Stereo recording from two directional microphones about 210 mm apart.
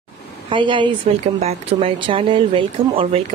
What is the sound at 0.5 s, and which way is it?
Speech, 25° right (ahead or behind).